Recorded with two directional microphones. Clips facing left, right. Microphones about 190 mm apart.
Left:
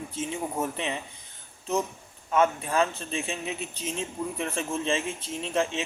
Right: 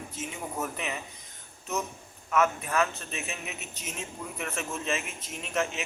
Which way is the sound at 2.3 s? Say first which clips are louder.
Left 2 dB; 30° left (ahead or behind).